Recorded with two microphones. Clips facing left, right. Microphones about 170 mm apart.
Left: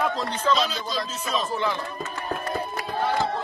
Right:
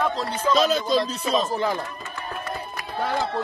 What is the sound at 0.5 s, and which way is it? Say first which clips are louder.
Chopping: right 7 dB; 50° right (ahead or behind).